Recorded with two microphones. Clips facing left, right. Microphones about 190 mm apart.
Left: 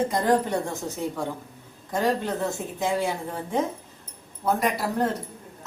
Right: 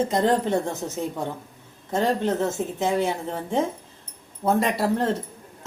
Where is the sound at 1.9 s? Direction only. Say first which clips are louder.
Right 2 dB; 25° right (ahead or behind).